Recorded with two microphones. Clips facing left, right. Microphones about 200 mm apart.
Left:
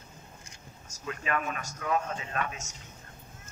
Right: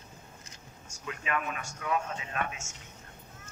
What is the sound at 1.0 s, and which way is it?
Speech, 40° left (ahead or behind).